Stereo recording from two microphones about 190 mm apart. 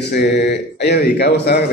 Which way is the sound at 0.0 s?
60° left (ahead or behind).